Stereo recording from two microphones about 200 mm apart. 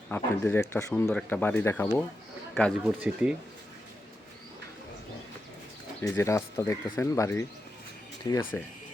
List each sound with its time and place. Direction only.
0.1 s speech: 10° left (ahead or behind)
2.8 s speech: 5° right (ahead or behind)
6.0 s speech: 15° left (ahead or behind)